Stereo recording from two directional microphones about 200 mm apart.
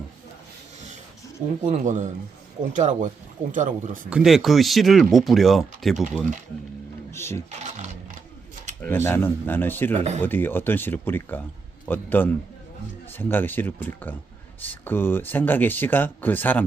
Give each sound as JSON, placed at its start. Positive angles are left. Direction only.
{"t": 1.6, "sound": "speech", "side_deg": -35}
{"t": 4.1, "sound": "speech", "side_deg": 0}
{"t": 7.1, "sound": "speech", "side_deg": 10}
{"t": 7.6, "sound": "sewing machine", "side_deg": -35}
{"t": 8.8, "sound": "speech", "side_deg": 10}
{"t": 9.9, "sound": "speech", "side_deg": -35}
{"t": 10.2, "sound": "speech", "side_deg": 10}